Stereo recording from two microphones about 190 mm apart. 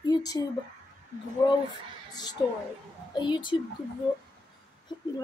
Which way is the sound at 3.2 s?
25° left (ahead or behind).